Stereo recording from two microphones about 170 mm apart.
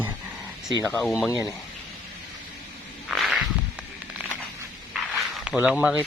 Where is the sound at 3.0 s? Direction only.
Centre (ahead or behind).